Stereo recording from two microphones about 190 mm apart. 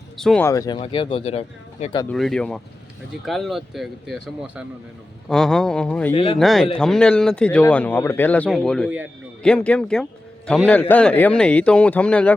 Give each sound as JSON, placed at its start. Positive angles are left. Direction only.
{"t": 0.2, "sound": "speech", "side_deg": 0}
{"t": 0.4, "sound": "speech", "side_deg": 15}
{"t": 0.8, "sound": "speech", "side_deg": 30}
{"t": 2.0, "sound": "a man's voice", "side_deg": 0}
{"t": 6.1, "sound": "speech", "side_deg": 30}
{"t": 6.4, "sound": "a man's voice", "side_deg": 0}